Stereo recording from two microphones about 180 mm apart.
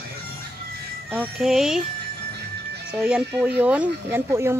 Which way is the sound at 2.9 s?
5° right (ahead or behind).